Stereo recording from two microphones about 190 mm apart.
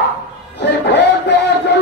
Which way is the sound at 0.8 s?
60° left (ahead or behind).